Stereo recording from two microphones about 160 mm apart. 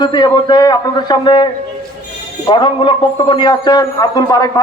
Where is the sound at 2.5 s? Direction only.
30° left (ahead or behind).